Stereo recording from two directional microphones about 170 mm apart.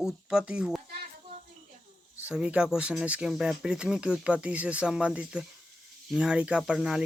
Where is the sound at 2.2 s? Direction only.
5° right (ahead or behind).